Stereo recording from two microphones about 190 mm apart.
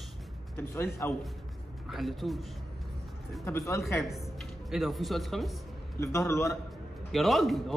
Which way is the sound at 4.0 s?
Centre (ahead or behind).